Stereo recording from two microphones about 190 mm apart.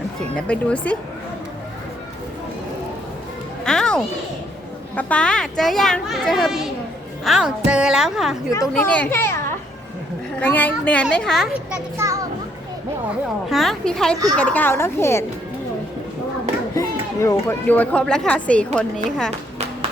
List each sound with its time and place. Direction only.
0.2 s a woman's voice: 5° left (ahead or behind)
3.6 s music: 5° left (ahead or behind)
4.9 s a woman's voice: 5° left (ahead or behind)
8.4 s a woman's voice: 20° left (ahead or behind)
8.7 s speech: 5° left (ahead or behind)
10.4 s a child's voice: 10° left (ahead or behind); by 12.2 s 15° right (ahead or behind)
13.5 s a woman's voice: centre (ahead or behind)
16.7 s speech: 15° left (ahead or behind)